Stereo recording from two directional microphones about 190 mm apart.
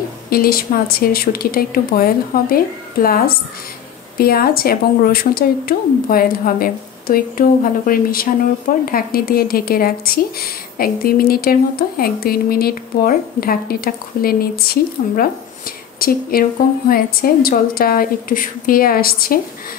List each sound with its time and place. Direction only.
0.3 s speech: 50° left (ahead or behind)